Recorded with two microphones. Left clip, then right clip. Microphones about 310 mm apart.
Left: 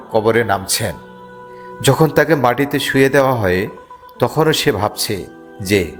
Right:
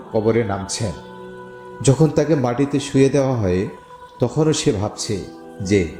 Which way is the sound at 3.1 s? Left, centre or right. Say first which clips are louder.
Left 5 dB; left.